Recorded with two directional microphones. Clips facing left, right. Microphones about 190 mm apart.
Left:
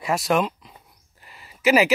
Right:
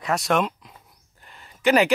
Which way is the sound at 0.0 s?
Centre (ahead or behind).